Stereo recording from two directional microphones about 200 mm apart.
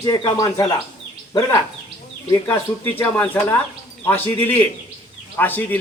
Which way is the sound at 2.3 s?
10° left (ahead or behind).